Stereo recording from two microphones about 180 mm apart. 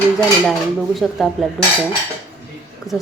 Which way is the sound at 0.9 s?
Centre (ahead or behind).